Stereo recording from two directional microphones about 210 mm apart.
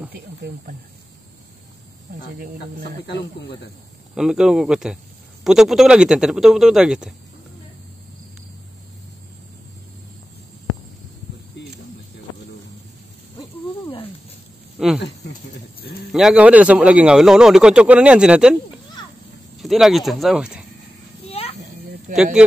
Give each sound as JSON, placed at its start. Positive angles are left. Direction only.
{"t": 0.1, "sound": "speech", "side_deg": -45}
{"t": 4.1, "sound": "speech", "side_deg": -5}
{"t": 13.4, "sound": "a sound", "side_deg": 25}
{"t": 14.8, "sound": "a sound", "side_deg": 0}
{"t": 16.1, "sound": "speech", "side_deg": -5}
{"t": 19.6, "sound": "speech", "side_deg": 0}
{"t": 21.3, "sound": "children playing", "side_deg": 30}
{"t": 22.1, "sound": "speech", "side_deg": -5}